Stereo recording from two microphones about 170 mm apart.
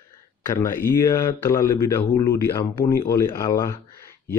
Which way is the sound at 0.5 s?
15° left (ahead or behind).